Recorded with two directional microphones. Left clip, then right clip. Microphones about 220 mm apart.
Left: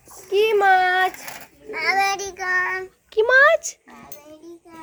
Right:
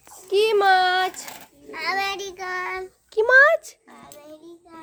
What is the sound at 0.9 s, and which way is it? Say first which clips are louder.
Child singing: left 3 dB; 5° right (ahead or behind).